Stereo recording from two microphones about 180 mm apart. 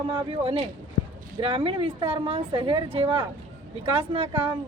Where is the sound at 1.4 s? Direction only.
30° right (ahead or behind).